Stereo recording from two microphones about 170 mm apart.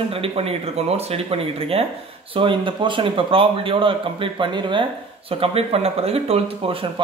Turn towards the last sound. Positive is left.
turn(degrees=-35)  # may be behind; listen again after turning